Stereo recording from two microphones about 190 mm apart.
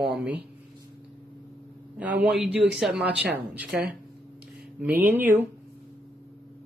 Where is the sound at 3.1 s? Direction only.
55° right (ahead or behind).